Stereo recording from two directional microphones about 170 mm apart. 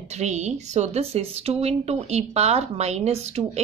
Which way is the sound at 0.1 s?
40° right (ahead or behind).